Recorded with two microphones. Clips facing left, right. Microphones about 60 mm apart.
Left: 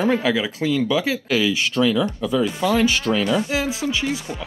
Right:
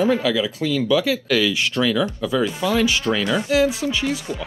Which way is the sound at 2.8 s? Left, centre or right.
Left.